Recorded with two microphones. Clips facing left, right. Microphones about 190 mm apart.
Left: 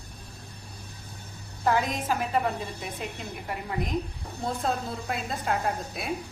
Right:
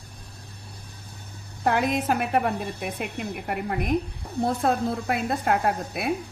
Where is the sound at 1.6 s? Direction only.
65° right (ahead or behind).